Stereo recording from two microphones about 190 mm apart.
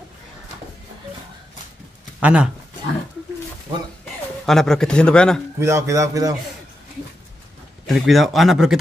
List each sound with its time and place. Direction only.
2.1 s speech: 5° right (ahead or behind)
4.5 s speech: centre (ahead or behind)
5.6 s a man's voice: 15° right (ahead or behind)
7.8 s speech: centre (ahead or behind)